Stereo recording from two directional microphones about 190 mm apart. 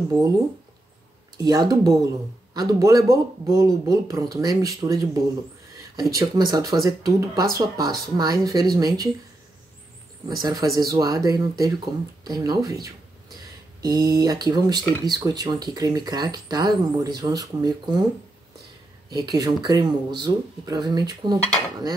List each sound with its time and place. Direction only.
1.4 s speech: 20° right (ahead or behind)
10.2 s speech: 20° right (ahead or behind)
13.8 s speech: 20° right (ahead or behind)
19.0 s speech: 20° right (ahead or behind)